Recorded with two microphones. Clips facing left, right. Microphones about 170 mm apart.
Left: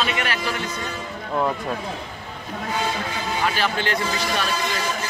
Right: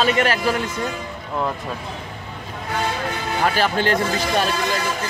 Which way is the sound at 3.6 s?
45° right (ahead or behind).